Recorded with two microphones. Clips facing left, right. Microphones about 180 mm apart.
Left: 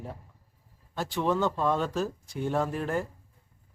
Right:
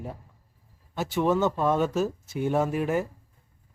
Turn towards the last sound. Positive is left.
turn(degrees=-10)  # may be behind; listen again after turning